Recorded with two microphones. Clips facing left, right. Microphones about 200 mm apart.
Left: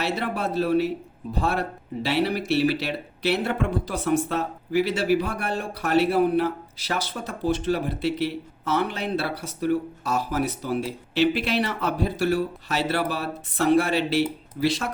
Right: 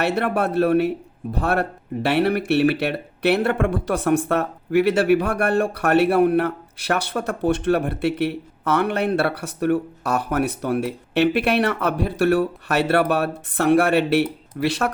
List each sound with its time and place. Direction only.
0.0 s a man's voice: 65° right (ahead or behind)